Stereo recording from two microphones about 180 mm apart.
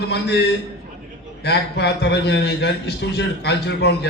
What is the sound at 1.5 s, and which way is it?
A man's voice, 70° left (ahead or behind).